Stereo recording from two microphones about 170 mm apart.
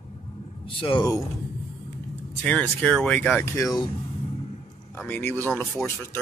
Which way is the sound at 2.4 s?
10° left (ahead or behind).